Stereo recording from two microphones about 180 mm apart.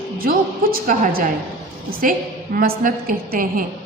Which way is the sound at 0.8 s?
50° right (ahead or behind).